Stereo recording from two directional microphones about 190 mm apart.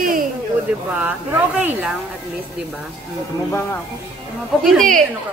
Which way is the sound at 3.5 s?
15° left (ahead or behind).